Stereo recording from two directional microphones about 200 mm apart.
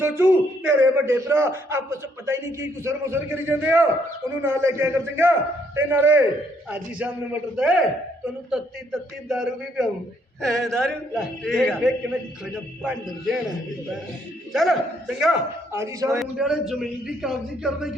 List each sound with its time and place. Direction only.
0.0 s a man's voice: 10° right (ahead or behind)
7.5 s a man's voice: 5° right (ahead or behind)
14.5 s a man's voice: centre (ahead or behind)
15.8 s a man's voice: 15° right (ahead or behind)
16.1 s a man's voice: centre (ahead or behind)